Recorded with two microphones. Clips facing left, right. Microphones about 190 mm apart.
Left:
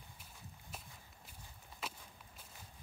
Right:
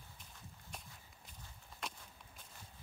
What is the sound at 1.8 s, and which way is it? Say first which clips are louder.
Walk: even; 5° left (ahead or behind).